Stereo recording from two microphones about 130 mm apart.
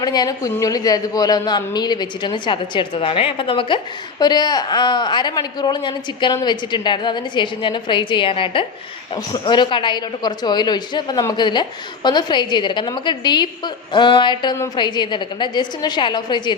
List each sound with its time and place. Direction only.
0.0 s a woman's voice: 30° left (ahead or behind)